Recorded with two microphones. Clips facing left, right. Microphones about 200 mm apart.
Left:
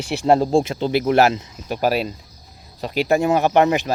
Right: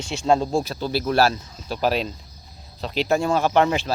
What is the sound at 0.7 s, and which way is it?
Speech, 20° left (ahead or behind).